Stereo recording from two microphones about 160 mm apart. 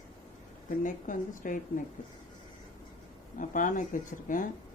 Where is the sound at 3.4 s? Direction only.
55° left (ahead or behind).